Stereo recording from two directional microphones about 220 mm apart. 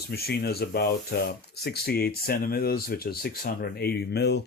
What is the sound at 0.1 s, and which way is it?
Speech, 45° left (ahead or behind).